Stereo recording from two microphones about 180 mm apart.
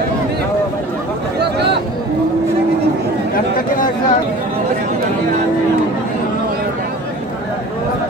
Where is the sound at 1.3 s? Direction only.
70° right (ahead or behind).